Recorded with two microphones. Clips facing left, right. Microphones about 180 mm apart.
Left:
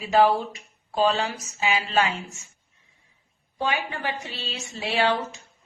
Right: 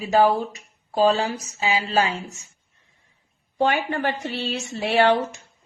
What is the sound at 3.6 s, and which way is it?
A woman's voice, 55° right (ahead or behind).